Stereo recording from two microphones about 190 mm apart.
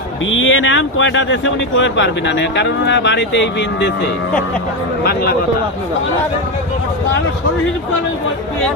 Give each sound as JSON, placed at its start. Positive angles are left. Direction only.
{"t": 0.3, "sound": "speech", "side_deg": 90}
{"t": 5.0, "sound": "speech", "side_deg": 55}